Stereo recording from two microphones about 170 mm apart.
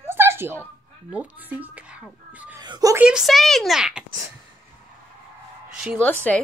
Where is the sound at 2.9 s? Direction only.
5° right (ahead or behind).